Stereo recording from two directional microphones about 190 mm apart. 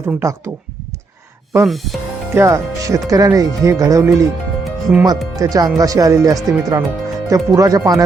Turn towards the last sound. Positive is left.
turn(degrees=-20)  # may be behind; listen again after turning